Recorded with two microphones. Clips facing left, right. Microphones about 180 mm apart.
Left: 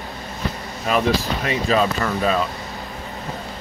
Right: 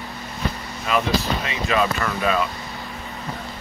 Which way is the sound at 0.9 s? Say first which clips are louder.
Left 2 dB; 40° left (ahead or behind).